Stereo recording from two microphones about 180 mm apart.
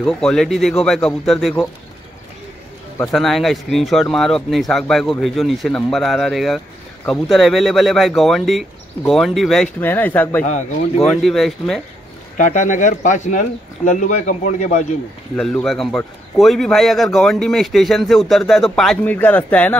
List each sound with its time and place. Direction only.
0.0 s a man's voice: 5° left (ahead or behind)
3.1 s a man's voice: centre (ahead or behind)
12.4 s speech: 45° left (ahead or behind)
15.3 s a man's voice: 5° left (ahead or behind)